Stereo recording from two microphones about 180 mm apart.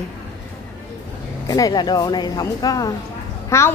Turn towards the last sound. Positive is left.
turn(degrees=15)  # may be behind; listen again after turning